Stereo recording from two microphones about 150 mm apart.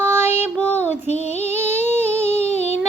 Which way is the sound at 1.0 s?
45° left (ahead or behind).